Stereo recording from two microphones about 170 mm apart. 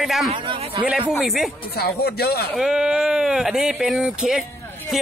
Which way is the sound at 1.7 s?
65° left (ahead or behind).